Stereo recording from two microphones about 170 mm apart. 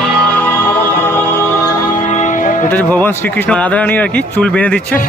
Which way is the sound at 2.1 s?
50° left (ahead or behind).